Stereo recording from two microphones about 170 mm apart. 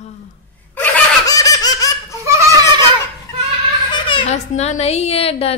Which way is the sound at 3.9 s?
30° left (ahead or behind).